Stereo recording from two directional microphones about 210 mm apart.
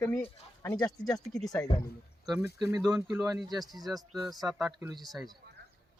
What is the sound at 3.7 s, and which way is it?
Speech, 20° right (ahead or behind).